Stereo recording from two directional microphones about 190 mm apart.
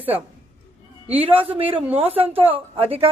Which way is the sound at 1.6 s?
30° right (ahead or behind).